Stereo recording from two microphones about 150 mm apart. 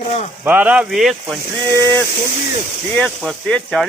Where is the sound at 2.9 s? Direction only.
Centre (ahead or behind).